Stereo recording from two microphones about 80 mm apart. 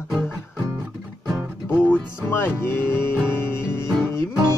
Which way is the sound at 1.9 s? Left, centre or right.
Left.